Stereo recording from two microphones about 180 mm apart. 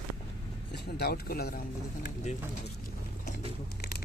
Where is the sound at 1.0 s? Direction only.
60° left (ahead or behind).